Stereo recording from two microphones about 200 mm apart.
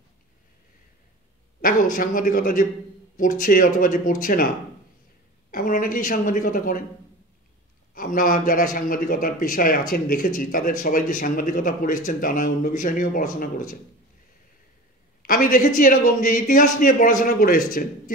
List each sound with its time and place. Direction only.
1.6 s a man's voice: 45° left (ahead or behind)
5.5 s a man's voice: 45° left (ahead or behind)
7.9 s a man's voice: 45° left (ahead or behind)
15.2 s a man's voice: 45° left (ahead or behind)